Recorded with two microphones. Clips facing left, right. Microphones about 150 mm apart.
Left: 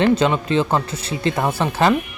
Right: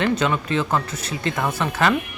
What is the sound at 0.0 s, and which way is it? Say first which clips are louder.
Speech: left 5 dB; 30° left (ahead or behind).